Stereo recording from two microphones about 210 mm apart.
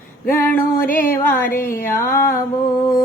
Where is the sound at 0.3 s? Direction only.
10° left (ahead or behind).